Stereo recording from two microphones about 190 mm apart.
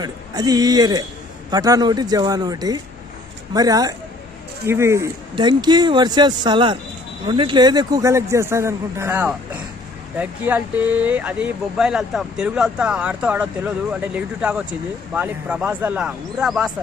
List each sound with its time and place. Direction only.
0.0 s a man's voice: 20° right (ahead or behind); by 16.7 s centre (ahead or behind)